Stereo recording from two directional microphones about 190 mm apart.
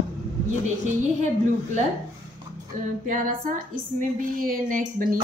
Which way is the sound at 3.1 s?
45° right (ahead or behind).